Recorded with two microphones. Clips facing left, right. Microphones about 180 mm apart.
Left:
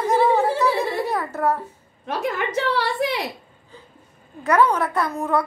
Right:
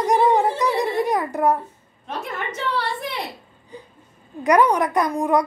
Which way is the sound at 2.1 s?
80° left.